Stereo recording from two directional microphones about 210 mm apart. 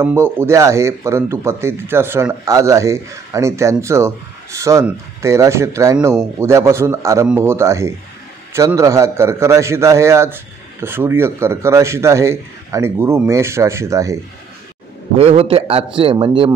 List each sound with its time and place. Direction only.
0.0 s a man's voice: 10° right (ahead or behind)
15.1 s a man's voice: 30° right (ahead or behind)